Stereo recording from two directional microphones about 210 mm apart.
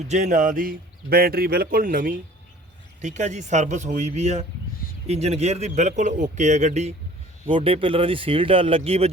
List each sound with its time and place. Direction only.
0.1 s a man's voice: 35° right (ahead or behind)